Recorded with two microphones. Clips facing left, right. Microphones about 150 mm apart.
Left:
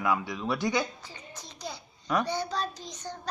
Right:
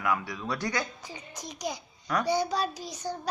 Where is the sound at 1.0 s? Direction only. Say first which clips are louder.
Right 4 dB; 15° right (ahead or behind).